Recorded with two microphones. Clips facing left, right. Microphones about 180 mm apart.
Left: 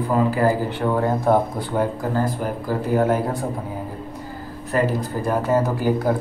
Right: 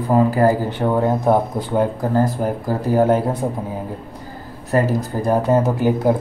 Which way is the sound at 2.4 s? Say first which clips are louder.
Right 3 dB; 35° right (ahead or behind).